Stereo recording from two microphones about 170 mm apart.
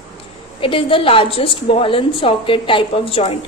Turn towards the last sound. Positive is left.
turn(degrees=35)  # may be behind; listen again after turning